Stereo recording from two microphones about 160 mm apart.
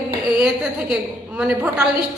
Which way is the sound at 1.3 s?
10° right (ahead or behind).